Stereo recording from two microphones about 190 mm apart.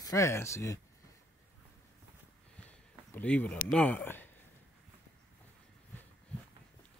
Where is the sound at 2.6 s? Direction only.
5° left (ahead or behind).